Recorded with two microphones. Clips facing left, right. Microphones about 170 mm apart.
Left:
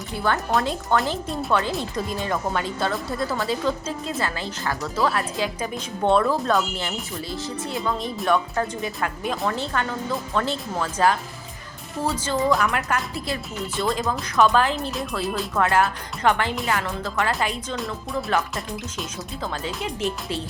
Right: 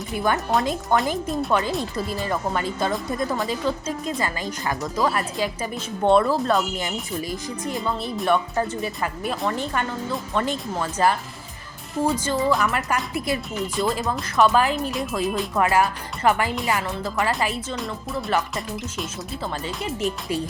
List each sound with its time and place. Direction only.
0.3 s speech: centre (ahead or behind)
3.1 s speech: 15° right (ahead or behind)
3.3 s speech: 5° right (ahead or behind)
12.2 s speech: 5° right (ahead or behind)